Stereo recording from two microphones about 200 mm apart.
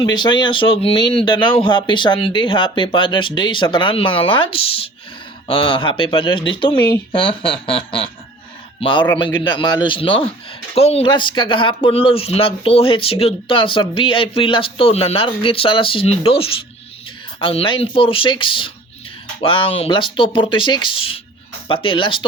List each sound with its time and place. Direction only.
0.0 s speech: 20° left (ahead or behind)